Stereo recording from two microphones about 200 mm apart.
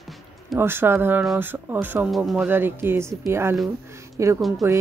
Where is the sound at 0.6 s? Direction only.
10° right (ahead or behind).